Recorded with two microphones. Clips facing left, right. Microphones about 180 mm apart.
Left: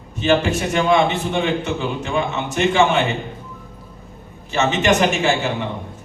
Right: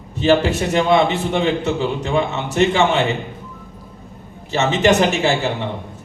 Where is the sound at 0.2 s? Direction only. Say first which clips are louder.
Right 2 dB; 35° right (ahead or behind).